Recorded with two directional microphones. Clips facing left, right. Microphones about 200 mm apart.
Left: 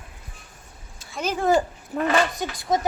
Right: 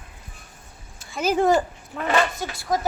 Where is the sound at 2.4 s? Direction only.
20° left (ahead or behind).